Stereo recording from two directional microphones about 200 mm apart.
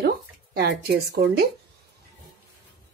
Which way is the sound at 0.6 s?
55° right (ahead or behind).